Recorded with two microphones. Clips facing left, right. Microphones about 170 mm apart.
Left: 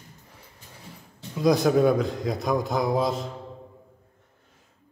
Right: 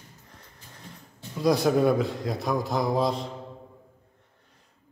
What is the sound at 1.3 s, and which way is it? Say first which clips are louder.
A man's voice: left 2 dB; centre (ahead or behind).